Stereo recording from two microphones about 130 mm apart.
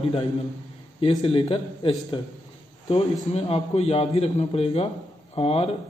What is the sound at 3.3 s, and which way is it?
Speech, 50° left (ahead or behind).